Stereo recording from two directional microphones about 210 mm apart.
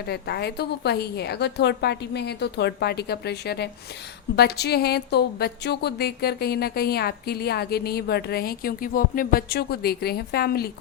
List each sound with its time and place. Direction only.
0.0 s a woman's voice: 50° left (ahead or behind)